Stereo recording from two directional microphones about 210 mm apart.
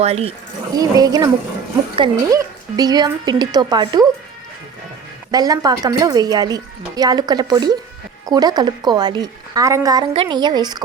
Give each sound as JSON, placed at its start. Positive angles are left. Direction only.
{"t": 0.0, "sound": "a woman's voice", "side_deg": -30}
{"t": 0.8, "sound": "a woman's voice", "side_deg": -20}
{"t": 5.3, "sound": "a woman's voice", "side_deg": -20}